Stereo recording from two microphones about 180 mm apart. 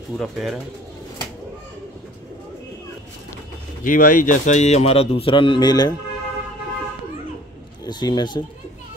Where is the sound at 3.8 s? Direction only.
50° left (ahead or behind); by 5.9 s 25° left (ahead or behind).